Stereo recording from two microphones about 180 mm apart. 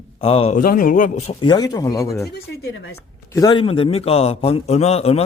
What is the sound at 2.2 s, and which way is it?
Speech, 65° left (ahead or behind).